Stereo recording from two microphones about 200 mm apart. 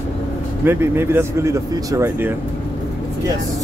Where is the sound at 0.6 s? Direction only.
10° right (ahead or behind).